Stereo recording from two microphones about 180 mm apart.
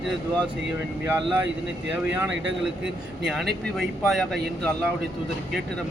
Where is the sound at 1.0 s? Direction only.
10° right (ahead or behind).